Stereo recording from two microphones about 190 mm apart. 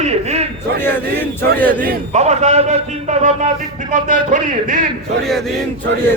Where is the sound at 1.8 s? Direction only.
35° right (ahead or behind).